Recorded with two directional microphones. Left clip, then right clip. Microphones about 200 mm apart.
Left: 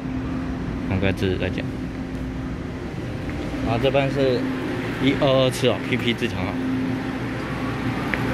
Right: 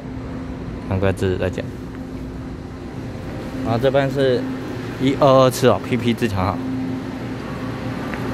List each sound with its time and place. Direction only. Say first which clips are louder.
0.9 s speech: right 4 dB; 20° right (ahead or behind)
3.7 s speech: right 3 dB; 40° right (ahead or behind)